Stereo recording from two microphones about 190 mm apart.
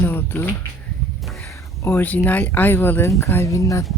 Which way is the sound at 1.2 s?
Centre (ahead or behind).